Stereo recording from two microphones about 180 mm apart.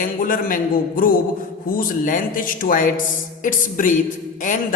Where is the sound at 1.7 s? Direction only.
50° left (ahead or behind).